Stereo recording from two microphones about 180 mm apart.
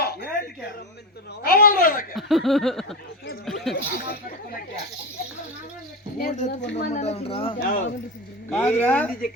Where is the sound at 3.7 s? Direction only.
55° left (ahead or behind).